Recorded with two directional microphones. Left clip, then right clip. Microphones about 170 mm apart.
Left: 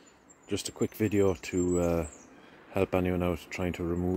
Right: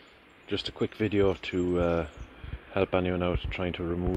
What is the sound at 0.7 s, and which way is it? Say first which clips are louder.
Speech: even; 30° left (ahead or behind).